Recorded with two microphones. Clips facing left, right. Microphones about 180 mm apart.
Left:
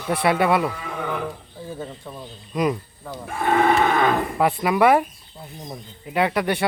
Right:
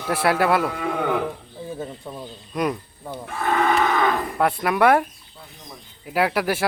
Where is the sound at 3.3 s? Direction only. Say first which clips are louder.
Left 3 dB; 30° left (ahead or behind).